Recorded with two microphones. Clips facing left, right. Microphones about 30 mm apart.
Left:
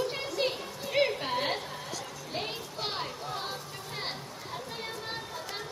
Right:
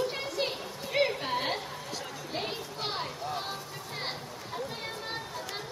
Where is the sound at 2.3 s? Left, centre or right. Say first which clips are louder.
Even; centre.